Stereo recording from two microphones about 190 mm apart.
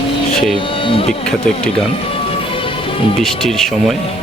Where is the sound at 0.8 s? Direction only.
30° left (ahead or behind).